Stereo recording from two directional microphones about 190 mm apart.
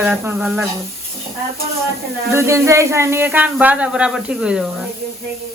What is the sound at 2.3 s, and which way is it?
Speech, 15° right (ahead or behind).